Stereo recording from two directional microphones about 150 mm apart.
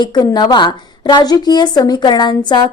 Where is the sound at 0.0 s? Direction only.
25° left (ahead or behind).